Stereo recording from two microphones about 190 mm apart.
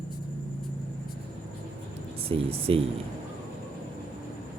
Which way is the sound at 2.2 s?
30° right (ahead or behind).